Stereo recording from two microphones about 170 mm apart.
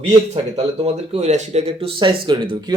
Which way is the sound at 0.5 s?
40° right (ahead or behind).